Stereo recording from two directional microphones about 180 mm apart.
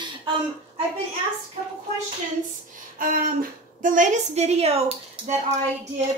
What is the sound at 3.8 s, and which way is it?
A woman's voice, 45° right (ahead or behind).